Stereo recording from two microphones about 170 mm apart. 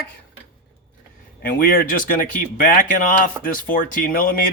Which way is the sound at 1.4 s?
60° left (ahead or behind).